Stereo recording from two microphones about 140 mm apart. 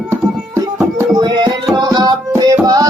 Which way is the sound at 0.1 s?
15° right (ahead or behind).